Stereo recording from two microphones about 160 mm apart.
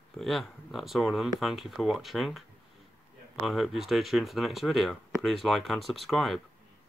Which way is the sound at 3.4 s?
Centre (ahead or behind).